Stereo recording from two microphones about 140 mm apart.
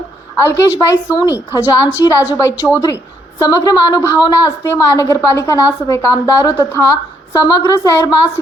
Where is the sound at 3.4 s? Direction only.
25° left (ahead or behind).